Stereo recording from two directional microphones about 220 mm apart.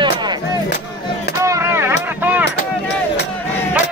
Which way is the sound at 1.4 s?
15° right (ahead or behind).